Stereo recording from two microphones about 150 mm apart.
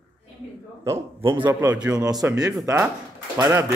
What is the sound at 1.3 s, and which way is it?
A man's voice, 30° right (ahead or behind).